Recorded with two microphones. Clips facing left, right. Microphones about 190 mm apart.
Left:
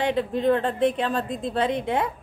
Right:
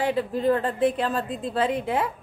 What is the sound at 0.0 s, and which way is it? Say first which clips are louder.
A woman's voice: left 1 dB; 5° right (ahead or behind).